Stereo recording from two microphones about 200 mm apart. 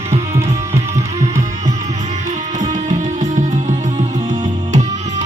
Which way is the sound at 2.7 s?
35° right (ahead or behind).